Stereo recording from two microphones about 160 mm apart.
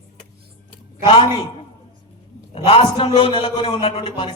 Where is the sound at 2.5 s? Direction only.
35° left (ahead or behind).